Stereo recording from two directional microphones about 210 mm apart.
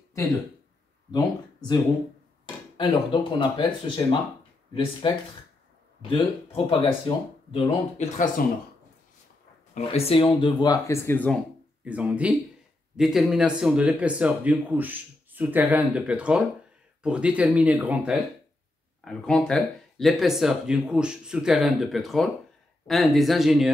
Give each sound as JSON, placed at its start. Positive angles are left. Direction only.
{"t": 1.1, "sound": "speech", "side_deg": 20}
{"t": 9.8, "sound": "speech", "side_deg": 30}
{"t": 11.8, "sound": "speech", "side_deg": -5}